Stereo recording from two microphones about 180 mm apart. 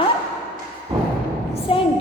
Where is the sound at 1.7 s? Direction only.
30° left (ahead or behind).